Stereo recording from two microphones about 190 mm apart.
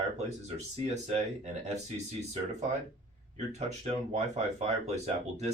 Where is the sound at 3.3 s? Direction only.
35° right (ahead or behind).